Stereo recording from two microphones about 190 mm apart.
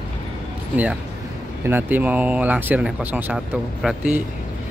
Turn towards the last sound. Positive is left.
turn(degrees=-5)  # may be behind; listen again after turning